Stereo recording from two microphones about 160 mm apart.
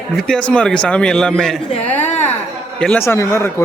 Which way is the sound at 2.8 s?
5° left (ahead or behind).